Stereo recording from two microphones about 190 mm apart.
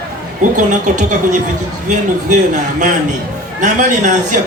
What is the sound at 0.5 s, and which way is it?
A man's voice, 40° right (ahead or behind).